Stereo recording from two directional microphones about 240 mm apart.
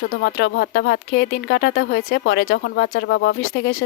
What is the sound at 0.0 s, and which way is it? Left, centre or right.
Speech, left.